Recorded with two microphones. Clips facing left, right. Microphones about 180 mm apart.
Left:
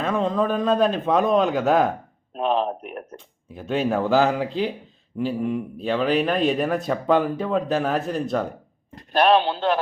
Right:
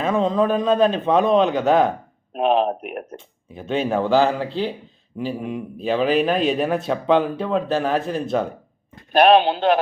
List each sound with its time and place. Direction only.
0.0 s speech: centre (ahead or behind)
3.2 s speech: centre (ahead or behind)
4.4 s speech: 30° right (ahead or behind)
5.4 s a man's voice: 15° right (ahead or behind)
5.8 s speech: 5° right (ahead or behind)
9.1 s a man's voice: 15° right (ahead or behind)